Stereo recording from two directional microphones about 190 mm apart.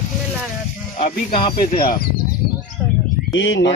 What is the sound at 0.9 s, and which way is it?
Speech, 35° left (ahead or behind).